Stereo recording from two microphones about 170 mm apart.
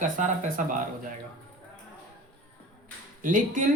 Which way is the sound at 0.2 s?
50° right (ahead or behind).